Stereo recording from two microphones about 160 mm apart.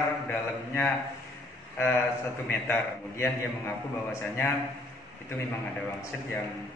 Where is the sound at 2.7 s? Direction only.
15° left (ahead or behind).